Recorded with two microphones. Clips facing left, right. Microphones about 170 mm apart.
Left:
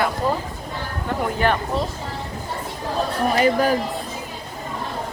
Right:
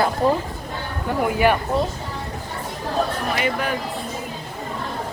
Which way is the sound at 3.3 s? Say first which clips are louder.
Left 8 dB; 35° left (ahead or behind).